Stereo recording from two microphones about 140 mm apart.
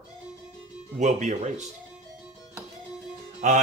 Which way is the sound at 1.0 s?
60° right (ahead or behind).